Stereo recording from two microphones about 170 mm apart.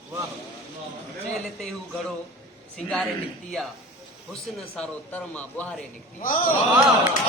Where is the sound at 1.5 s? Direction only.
Centre (ahead or behind).